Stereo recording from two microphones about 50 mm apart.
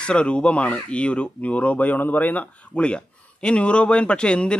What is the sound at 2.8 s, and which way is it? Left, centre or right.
Speech, left.